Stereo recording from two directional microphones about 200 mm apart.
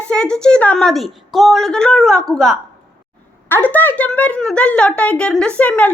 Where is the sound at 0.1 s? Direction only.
5° left (ahead or behind).